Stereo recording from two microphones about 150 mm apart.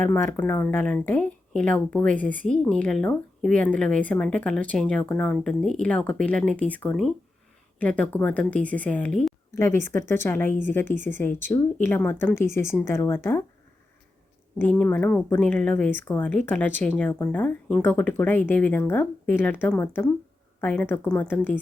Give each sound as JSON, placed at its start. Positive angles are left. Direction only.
{"t": 0.0, "sound": "speech", "side_deg": 15}
{"t": 14.6, "sound": "speech", "side_deg": 10}